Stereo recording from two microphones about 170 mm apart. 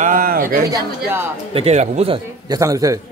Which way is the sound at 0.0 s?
55° right (ahead or behind).